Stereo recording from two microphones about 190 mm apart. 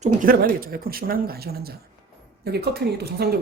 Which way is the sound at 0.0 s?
45° right (ahead or behind).